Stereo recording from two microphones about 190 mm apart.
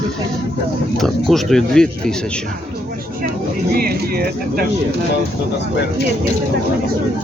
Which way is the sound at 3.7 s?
50° right (ahead or behind).